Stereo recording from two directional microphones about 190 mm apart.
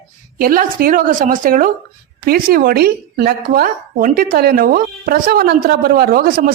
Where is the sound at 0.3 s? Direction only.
50° right (ahead or behind).